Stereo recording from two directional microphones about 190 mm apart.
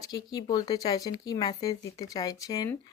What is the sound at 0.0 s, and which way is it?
Speech, 20° left (ahead or behind).